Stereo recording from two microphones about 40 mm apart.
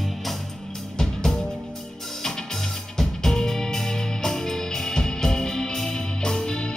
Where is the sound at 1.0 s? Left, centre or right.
Centre.